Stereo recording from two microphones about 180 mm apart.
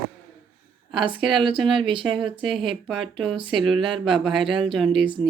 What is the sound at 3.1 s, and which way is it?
Speech, centre (ahead or behind).